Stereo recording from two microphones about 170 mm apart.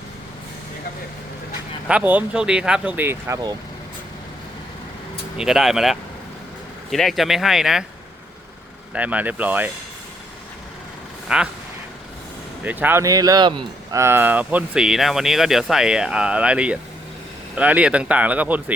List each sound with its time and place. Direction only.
1.9 s speech: 10° right (ahead or behind)
5.4 s speech: centre (ahead or behind)
8.9 s speech: 10° right (ahead or behind)
11.3 s speech: 5° right (ahead or behind)
12.6 s speech: 10° right (ahead or behind)
14.0 s speech: 15° right (ahead or behind)